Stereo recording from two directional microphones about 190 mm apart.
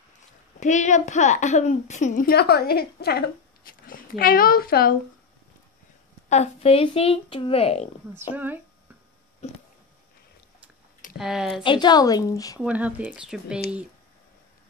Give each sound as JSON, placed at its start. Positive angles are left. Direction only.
{"t": 0.6, "sound": "a woman's voice", "side_deg": 40}
{"t": 6.2, "sound": "speech", "side_deg": 35}
{"t": 8.2, "sound": "speech", "side_deg": -10}
{"t": 9.4, "sound": "a sound", "side_deg": 35}
{"t": 11.1, "sound": "speech", "side_deg": -5}
{"t": 11.6, "sound": "a woman's voice", "side_deg": 25}
{"t": 12.5, "sound": "speech", "side_deg": -10}